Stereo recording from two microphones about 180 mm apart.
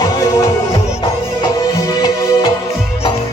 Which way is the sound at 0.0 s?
20° left (ahead or behind).